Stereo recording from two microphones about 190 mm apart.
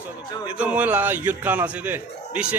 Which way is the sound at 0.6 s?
5° right (ahead or behind).